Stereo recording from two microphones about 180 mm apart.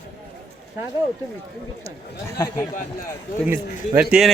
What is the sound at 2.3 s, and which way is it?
Speech, 20° left (ahead or behind).